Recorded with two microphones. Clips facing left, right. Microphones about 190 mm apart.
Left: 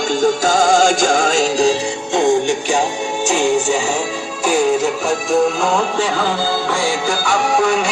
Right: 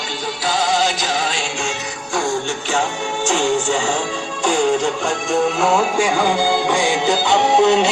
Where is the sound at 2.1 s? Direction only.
20° left (ahead or behind).